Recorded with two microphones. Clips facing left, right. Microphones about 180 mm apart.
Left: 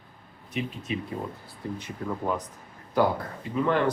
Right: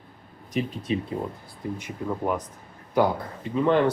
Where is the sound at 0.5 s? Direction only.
35° right (ahead or behind).